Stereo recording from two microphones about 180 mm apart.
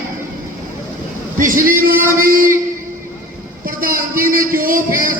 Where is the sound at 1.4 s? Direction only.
50° right (ahead or behind).